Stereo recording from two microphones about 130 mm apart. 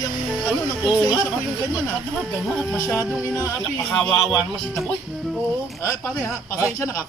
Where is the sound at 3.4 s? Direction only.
20° left (ahead or behind).